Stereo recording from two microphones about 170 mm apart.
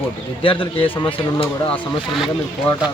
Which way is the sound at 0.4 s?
30° left (ahead or behind).